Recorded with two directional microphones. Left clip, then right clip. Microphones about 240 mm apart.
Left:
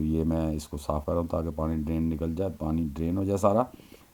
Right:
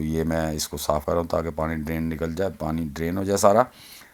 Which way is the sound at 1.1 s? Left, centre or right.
Right.